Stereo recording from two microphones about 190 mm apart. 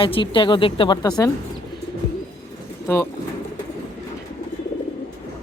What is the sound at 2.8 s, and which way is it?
Speech, 10° left (ahead or behind).